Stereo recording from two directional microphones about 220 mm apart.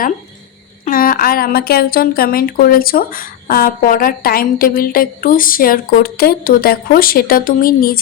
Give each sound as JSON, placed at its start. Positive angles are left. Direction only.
{"t": 0.9, "sound": "a woman's voice", "side_deg": 40}